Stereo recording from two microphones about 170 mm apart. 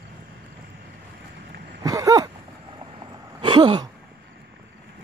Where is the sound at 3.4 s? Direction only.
30° right (ahead or behind).